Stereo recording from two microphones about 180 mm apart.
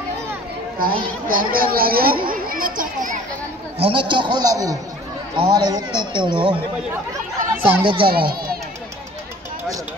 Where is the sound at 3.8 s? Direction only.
30° right (ahead or behind).